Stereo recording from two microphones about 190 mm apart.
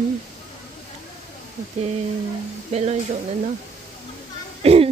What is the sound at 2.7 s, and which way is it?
Speech, 35° right (ahead or behind).